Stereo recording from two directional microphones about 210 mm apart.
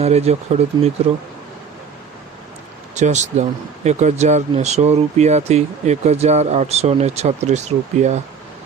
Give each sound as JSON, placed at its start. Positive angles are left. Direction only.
{"t": 0.0, "sound": "speech", "side_deg": -30}
{"t": 2.9, "sound": "speech", "side_deg": -35}